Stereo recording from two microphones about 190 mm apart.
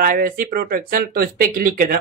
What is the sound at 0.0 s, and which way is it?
Speech, 45° right (ahead or behind).